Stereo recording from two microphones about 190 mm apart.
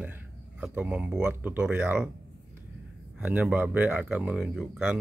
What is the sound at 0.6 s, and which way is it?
Speech, 5° right (ahead or behind).